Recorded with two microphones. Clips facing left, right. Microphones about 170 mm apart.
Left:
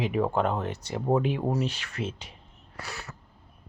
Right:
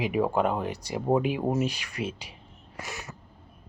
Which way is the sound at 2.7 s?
15° right (ahead or behind).